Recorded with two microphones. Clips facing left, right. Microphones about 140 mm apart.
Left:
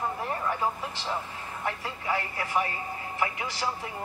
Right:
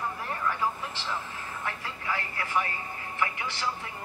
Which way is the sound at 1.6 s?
30° left (ahead or behind).